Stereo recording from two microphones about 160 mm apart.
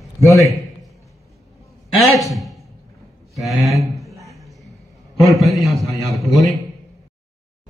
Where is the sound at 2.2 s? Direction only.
Centre (ahead or behind).